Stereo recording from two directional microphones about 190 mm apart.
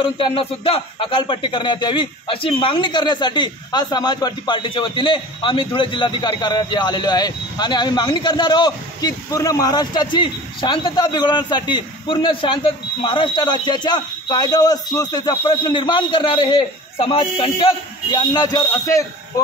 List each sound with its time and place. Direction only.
0.0 s speech: 25° left (ahead or behind)